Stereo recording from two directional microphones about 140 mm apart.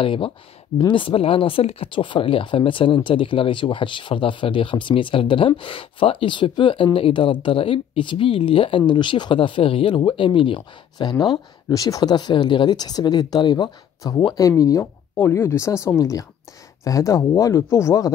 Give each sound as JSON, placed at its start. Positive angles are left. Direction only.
{"t": 0.0, "sound": "speech", "side_deg": 40}